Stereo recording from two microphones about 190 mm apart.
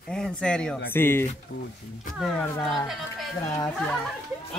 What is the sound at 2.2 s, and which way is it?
Speech, centre (ahead or behind).